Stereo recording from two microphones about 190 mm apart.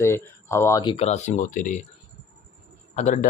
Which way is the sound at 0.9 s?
35° left (ahead or behind).